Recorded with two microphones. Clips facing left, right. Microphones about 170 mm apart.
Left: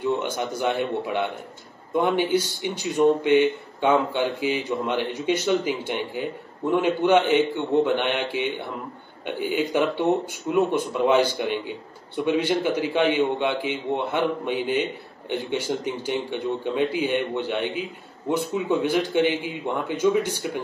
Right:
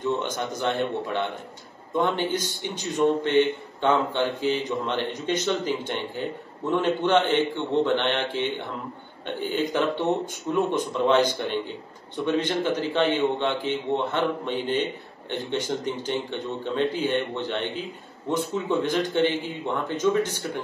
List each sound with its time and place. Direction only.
0.0 s a man's voice: 10° left (ahead or behind)